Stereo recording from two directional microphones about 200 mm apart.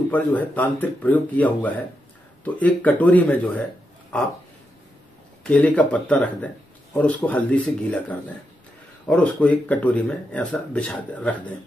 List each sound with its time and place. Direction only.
0.1 s speech: 10° left (ahead or behind)
5.4 s speech: 5° left (ahead or behind)